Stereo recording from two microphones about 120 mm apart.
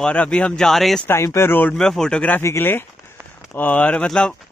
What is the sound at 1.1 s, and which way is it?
Speech, 25° left (ahead or behind).